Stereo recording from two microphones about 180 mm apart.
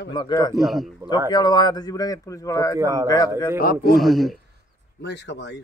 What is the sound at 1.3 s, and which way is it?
Speech, 20° left (ahead or behind).